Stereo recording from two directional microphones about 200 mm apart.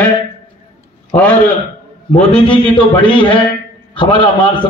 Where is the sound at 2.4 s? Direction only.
25° left (ahead or behind).